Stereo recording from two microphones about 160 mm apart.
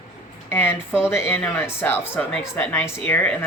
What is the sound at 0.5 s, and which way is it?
Speech, 15° left (ahead or behind).